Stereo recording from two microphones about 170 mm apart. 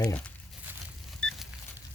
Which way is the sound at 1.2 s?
5° left (ahead or behind).